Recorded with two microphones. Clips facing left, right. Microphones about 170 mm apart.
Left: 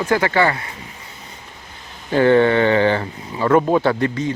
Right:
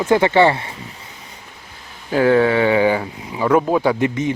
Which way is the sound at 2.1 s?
5° right (ahead or behind).